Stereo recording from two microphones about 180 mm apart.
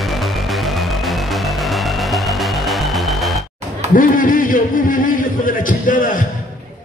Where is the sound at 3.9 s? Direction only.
50° left (ahead or behind).